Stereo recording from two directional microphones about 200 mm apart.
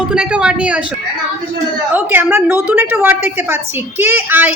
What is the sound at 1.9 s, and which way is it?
A woman's voice, 10° right (ahead or behind).